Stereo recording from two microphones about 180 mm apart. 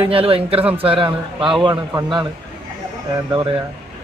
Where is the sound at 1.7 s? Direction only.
15° right (ahead or behind).